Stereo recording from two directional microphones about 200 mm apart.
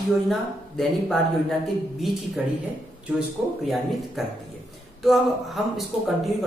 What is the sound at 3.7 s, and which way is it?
Speech, centre (ahead or behind).